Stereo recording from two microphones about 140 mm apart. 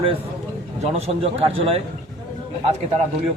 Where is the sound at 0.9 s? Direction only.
45° right (ahead or behind).